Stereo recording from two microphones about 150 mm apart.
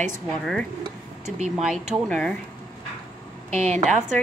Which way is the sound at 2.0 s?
5° left (ahead or behind).